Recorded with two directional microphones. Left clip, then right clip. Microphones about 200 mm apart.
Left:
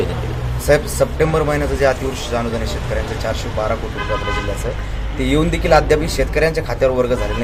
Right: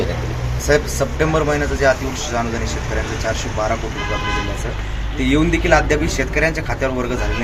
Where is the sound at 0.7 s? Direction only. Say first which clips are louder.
Left 2 dB; 45° left (ahead or behind).